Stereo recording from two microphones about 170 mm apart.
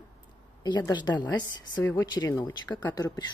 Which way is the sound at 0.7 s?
25° left (ahead or behind).